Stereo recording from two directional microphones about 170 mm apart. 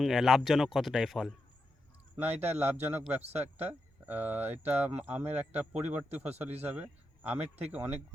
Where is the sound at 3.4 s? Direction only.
10° right (ahead or behind).